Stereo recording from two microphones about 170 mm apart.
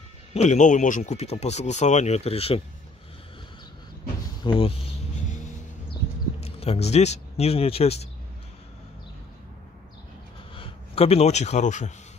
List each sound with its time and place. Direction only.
0.3 s speech: 40° left (ahead or behind)
4.4 s speech: 30° left (ahead or behind)
6.4 s speech: 40° left (ahead or behind)
10.5 s a man's voice: 35° left (ahead or behind)